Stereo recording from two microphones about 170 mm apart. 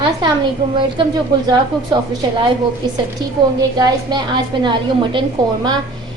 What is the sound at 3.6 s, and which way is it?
A woman's voice, 25° right (ahead or behind).